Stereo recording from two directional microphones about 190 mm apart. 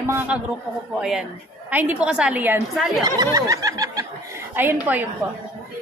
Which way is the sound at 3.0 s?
20° right (ahead or behind).